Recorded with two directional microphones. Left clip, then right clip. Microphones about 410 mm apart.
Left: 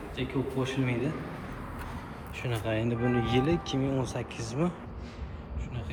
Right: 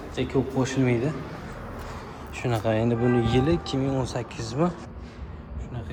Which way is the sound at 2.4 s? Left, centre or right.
Centre.